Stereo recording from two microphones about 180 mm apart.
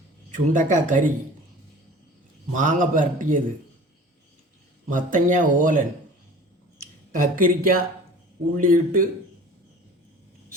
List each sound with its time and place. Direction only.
0.3 s a man's voice: 45° right (ahead or behind)
2.5 s a man's voice: 45° right (ahead or behind)
4.9 s a man's voice: 50° right (ahead or behind)
7.1 s a man's voice: 50° right (ahead or behind)